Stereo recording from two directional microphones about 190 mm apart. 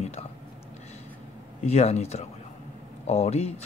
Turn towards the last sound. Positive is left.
turn(degrees=35)  # may be behind; listen again after turning